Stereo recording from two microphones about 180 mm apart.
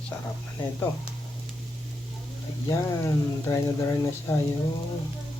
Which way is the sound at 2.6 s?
15° left (ahead or behind).